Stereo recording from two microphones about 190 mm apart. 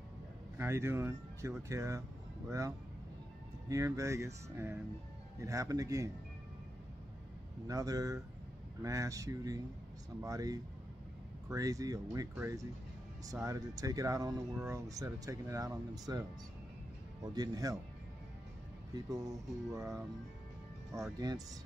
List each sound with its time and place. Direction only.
0.6 s speech: 15° right (ahead or behind)
3.6 s speech: 15° right (ahead or behind)
7.6 s speech: 20° right (ahead or behind)
19.0 s speech: 20° right (ahead or behind)
20.9 s speech: 15° right (ahead or behind)